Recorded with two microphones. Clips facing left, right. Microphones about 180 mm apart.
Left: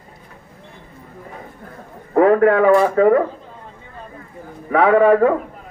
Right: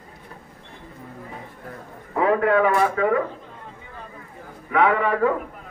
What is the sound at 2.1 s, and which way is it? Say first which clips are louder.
A man's voice: left 6 dB; 50° left (ahead or behind).